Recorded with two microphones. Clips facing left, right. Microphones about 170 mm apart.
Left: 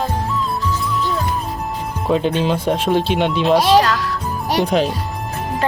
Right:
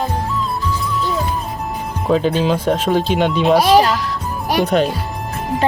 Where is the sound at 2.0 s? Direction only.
Centre (ahead or behind).